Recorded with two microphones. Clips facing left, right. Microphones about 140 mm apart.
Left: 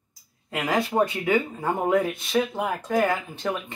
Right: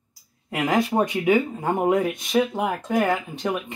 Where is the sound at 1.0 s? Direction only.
15° right (ahead or behind).